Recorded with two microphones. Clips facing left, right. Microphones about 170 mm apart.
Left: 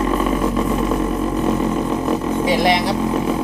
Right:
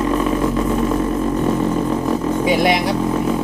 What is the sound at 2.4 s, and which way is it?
Speech, 5° right (ahead or behind).